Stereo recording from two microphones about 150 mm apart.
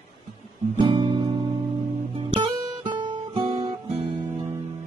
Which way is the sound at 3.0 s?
30° right (ahead or behind).